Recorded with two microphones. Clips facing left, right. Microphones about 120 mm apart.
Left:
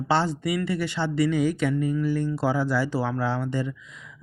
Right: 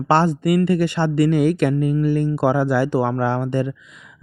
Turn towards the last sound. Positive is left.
turn(degrees=-65)  # may be behind; listen again after turning